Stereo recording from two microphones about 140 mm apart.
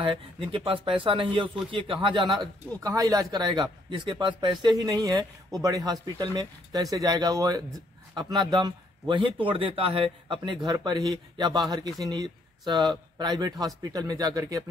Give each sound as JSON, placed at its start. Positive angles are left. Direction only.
{"t": 0.0, "sound": "a man's voice", "side_deg": -40}
{"t": 2.7, "sound": "a man's voice", "side_deg": -25}